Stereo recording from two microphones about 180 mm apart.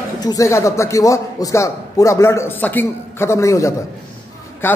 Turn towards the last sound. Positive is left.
turn(degrees=10)  # may be behind; listen again after turning